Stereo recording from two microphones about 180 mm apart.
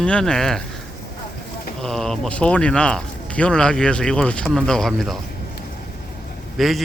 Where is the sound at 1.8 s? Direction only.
5° left (ahead or behind).